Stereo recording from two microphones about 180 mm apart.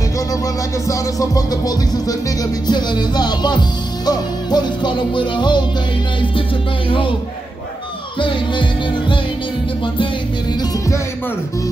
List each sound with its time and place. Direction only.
0.8 s music: 20° left (ahead or behind)
6.9 s music: 30° left (ahead or behind)
8.2 s music: 25° left (ahead or behind)
10.5 s music: 20° left (ahead or behind)